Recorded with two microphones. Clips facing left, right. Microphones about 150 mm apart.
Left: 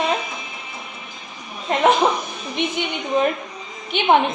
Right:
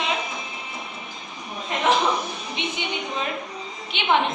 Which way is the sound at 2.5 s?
55° left (ahead or behind).